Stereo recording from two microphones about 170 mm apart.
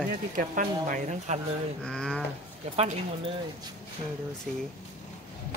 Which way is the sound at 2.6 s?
40° right (ahead or behind).